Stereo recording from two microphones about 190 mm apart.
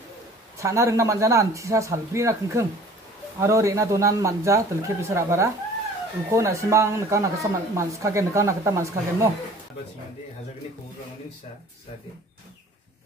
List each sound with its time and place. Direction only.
0.6 s speech: 15° right (ahead or behind)